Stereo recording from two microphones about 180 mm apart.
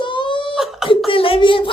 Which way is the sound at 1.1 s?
30° left (ahead or behind).